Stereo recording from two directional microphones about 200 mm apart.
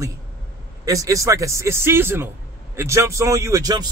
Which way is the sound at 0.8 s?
15° right (ahead or behind).